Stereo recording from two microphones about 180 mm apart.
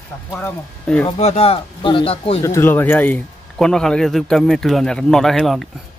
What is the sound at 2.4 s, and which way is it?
A man's voice, 15° left (ahead or behind).